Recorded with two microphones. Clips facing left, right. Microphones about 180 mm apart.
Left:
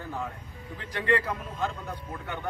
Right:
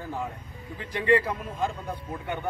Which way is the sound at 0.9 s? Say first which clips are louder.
Right 4 dB; 10° right (ahead or behind).